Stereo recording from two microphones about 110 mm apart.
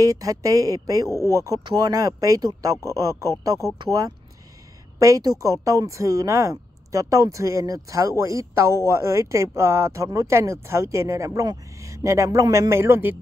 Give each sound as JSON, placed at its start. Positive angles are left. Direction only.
{"t": 0.0, "sound": "speech", "side_deg": -30}
{"t": 4.9, "sound": "a woman's voice", "side_deg": -30}